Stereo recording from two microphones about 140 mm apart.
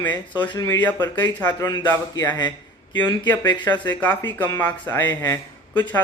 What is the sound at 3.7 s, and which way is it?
A man's voice, 10° left (ahead or behind).